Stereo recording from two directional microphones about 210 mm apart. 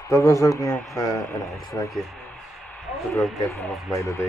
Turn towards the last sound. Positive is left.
turn(degrees=15)  # may be behind; listen again after turning